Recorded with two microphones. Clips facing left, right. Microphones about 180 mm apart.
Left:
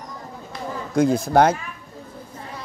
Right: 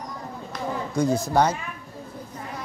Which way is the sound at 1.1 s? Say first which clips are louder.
Left 3 dB; 55° left (ahead or behind).